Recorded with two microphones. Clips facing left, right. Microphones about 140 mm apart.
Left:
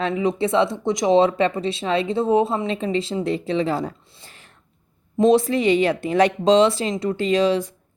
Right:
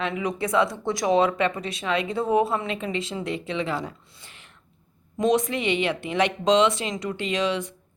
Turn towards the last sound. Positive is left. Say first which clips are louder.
# left 7 dB
turn(degrees=35)  # may be behind; listen again after turning